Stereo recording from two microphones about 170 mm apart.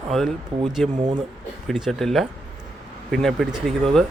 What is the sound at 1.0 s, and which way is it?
Speech, 30° right (ahead or behind).